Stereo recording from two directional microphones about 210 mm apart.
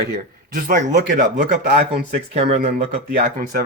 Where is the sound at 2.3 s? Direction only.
30° right (ahead or behind).